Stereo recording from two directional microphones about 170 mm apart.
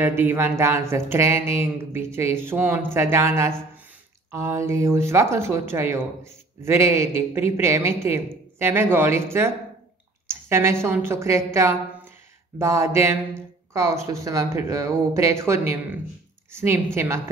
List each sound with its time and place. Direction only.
0.0 s speech: 15° right (ahead or behind)